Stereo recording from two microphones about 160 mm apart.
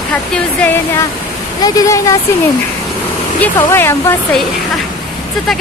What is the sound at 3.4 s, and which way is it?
Speech, 15° left (ahead or behind).